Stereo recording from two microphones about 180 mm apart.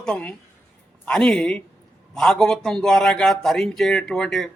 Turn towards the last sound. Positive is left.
turn(degrees=0)  # may be behind; listen again after turning